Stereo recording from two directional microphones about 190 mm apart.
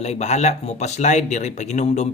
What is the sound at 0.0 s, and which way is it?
Speech, 35° left (ahead or behind).